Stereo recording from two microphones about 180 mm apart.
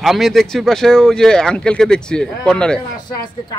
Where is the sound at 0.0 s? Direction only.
Centre (ahead or behind).